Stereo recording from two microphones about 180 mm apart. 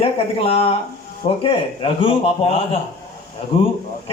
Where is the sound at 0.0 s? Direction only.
30° left (ahead or behind).